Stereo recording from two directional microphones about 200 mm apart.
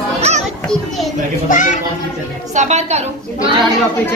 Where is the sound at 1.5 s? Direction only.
40° left (ahead or behind).